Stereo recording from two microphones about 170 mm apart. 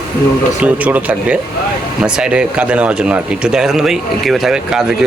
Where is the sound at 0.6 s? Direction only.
10° right (ahead or behind).